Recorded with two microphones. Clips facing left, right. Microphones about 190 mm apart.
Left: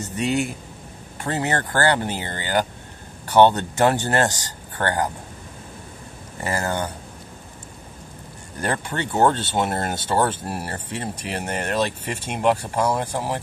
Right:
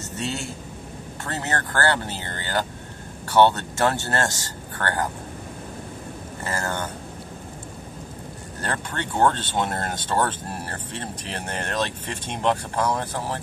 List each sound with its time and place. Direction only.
0.0 s speech: 15° left (ahead or behind)
6.4 s speech: 15° left (ahead or behind)
8.5 s speech: 10° left (ahead or behind)